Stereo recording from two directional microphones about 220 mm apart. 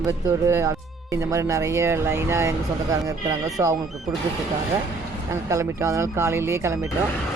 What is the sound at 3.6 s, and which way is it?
Speech, 10° right (ahead or behind).